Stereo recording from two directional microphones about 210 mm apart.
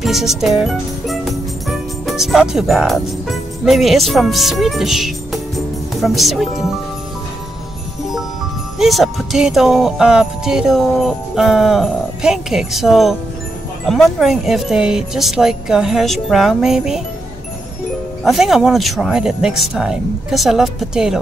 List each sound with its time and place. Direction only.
0.0 s speech: centre (ahead or behind)
8.7 s speech: centre (ahead or behind)
18.2 s speech: centre (ahead or behind)